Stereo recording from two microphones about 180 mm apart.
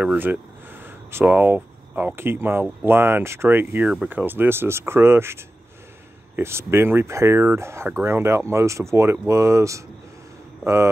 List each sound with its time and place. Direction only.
0.0 s speech: 10° right (ahead or behind)